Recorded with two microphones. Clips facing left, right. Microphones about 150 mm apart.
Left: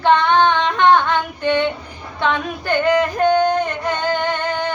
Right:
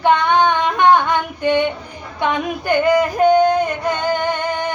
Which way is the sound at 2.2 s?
15° right (ahead or behind).